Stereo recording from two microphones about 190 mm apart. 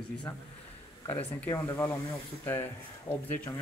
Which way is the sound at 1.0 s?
10° left (ahead or behind).